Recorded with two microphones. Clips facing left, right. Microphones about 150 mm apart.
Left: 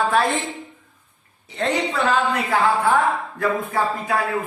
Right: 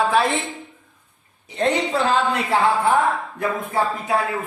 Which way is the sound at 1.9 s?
25° right (ahead or behind).